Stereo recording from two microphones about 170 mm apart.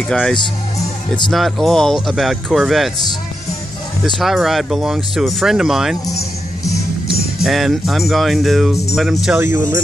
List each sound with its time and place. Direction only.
0.1 s speech: 5° left (ahead or behind)
4.0 s speech: centre (ahead or behind)
6.0 s music: 20° left (ahead or behind)
7.4 s speech: centre (ahead or behind)